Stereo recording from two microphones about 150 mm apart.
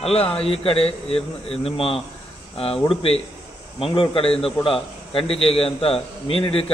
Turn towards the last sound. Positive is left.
turn(degrees=40)  # may be behind; listen again after turning